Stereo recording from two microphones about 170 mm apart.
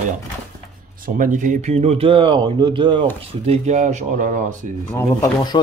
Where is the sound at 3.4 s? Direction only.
40° right (ahead or behind).